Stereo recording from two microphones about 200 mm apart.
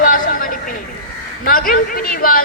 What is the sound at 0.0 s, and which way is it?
Vehicle, 45° left (ahead or behind).